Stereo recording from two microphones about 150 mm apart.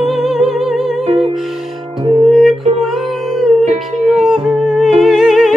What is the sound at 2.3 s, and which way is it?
Music, centre (ahead or behind).